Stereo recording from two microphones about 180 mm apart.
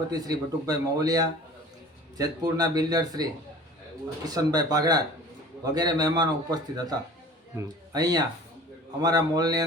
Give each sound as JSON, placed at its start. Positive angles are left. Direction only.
{"t": 0.1, "sound": "a man's voice", "side_deg": -20}
{"t": 4.3, "sound": "a man's voice", "side_deg": -20}